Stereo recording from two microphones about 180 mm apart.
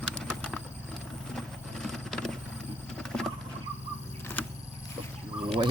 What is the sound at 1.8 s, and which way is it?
Vehicle, centre (ahead or behind).